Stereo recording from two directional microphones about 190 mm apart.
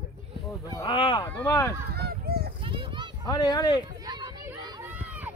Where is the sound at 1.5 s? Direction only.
15° left (ahead or behind).